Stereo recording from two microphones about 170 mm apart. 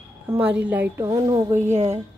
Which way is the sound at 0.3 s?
10° right (ahead or behind).